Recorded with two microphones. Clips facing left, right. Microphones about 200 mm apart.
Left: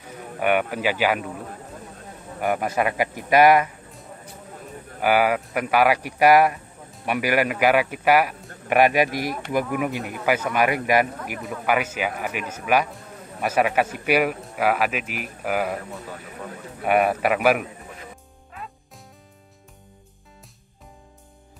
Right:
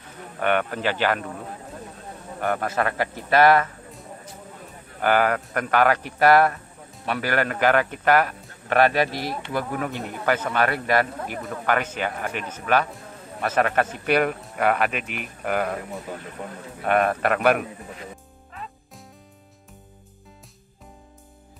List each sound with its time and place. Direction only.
0.4 s a man's voice: 10° left (ahead or behind)
2.4 s a man's voice: 15° left (ahead or behind)
5.0 s a man's voice: 10° left (ahead or behind)
18.5 s music: 5° left (ahead or behind)